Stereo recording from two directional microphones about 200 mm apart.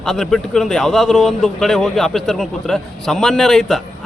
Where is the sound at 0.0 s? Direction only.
Centre (ahead or behind).